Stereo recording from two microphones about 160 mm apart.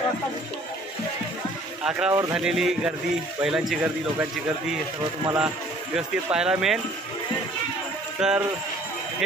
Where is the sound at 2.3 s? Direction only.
5° right (ahead or behind).